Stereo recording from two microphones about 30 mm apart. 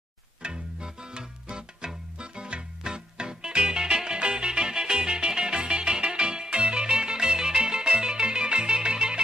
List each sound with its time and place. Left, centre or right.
0.4 s music: right